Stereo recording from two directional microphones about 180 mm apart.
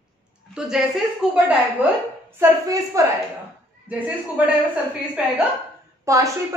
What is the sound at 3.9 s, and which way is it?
Speech, 10° right (ahead or behind).